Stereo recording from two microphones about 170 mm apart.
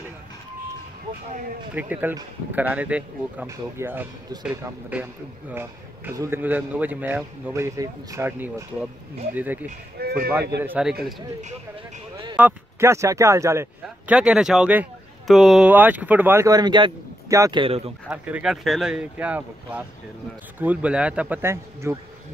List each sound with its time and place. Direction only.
1.8 s speech: 10° right (ahead or behind)
9.9 s speech: 65° right (ahead or behind)
10.6 s speech: 5° right (ahead or behind)
12.4 s speech: 15° right (ahead or behind); by 17.9 s 35° right (ahead or behind)
18.1 s speech: 10° right (ahead or behind)